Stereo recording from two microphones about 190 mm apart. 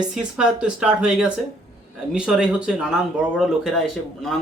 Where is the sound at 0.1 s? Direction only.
5° right (ahead or behind).